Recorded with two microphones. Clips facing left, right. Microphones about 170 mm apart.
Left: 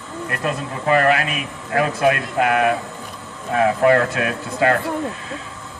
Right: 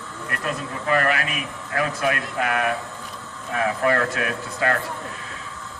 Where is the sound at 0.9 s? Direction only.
30° left (ahead or behind).